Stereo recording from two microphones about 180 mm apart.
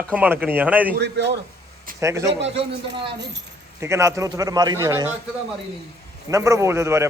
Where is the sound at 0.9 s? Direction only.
70° right (ahead or behind).